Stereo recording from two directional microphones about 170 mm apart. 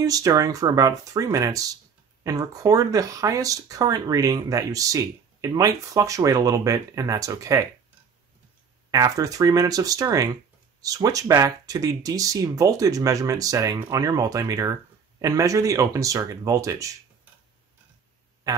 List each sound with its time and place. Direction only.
0.0 s speech: 20° right (ahead or behind)
8.9 s speech: 20° right (ahead or behind)